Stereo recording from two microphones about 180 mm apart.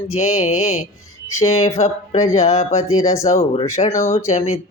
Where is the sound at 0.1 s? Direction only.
40° left (ahead or behind).